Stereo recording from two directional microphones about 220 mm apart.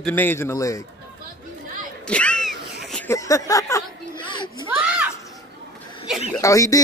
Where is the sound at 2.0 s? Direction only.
5° left (ahead or behind); by 4.6 s 20° left (ahead or behind).